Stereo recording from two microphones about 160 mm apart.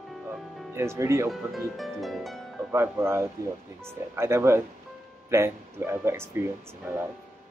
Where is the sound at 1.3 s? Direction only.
Centre (ahead or behind).